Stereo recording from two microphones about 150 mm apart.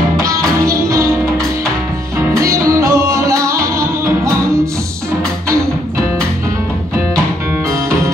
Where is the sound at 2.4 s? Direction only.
20° right (ahead or behind).